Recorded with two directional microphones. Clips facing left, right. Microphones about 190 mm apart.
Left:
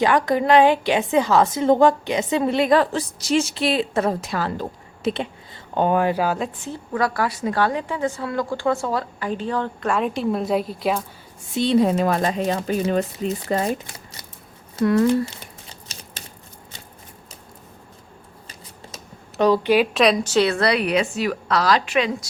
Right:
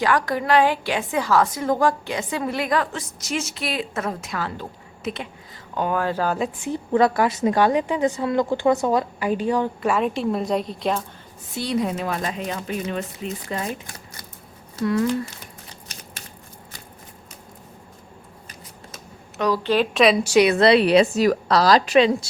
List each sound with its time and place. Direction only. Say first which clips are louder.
0.0 s a woman's voice: left 3 dB; 20° left (ahead or behind)
6.7 s a woman's voice: right 6 dB; 20° right (ahead or behind)
9.9 s a woman's voice: left 2 dB; centre (ahead or behind)
11.5 s speech: left 6 dB; 25° left (ahead or behind)
14.8 s speech: left 4 dB; 60° left (ahead or behind)
19.6 s a woman's voice: left 1 dB; 10° left (ahead or behind)
20.2 s a woman's voice: right 3 dB; 15° right (ahead or behind); by 22.3 s 30° right (ahead or behind)